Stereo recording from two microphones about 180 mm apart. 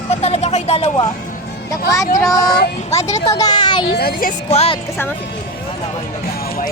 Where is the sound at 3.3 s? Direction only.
20° left (ahead or behind).